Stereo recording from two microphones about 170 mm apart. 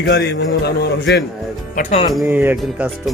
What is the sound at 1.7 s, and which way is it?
Speech, 50° left (ahead or behind).